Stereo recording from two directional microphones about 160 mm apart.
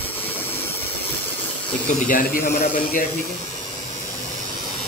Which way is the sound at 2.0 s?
60° left (ahead or behind).